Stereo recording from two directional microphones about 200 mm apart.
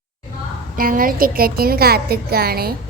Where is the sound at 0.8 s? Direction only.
45° right (ahead or behind).